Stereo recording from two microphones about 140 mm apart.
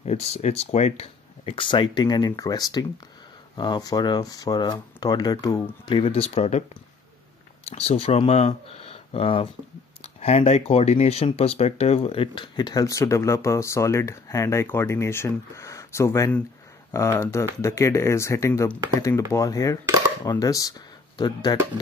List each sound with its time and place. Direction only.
0.0 s speech: 50° left (ahead or behind)
7.7 s speech: 50° left (ahead or behind); by 21.5 s 30° left (ahead or behind)